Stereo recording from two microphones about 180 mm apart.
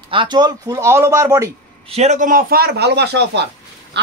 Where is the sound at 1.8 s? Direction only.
35° right (ahead or behind); by 3.5 s 70° right (ahead or behind).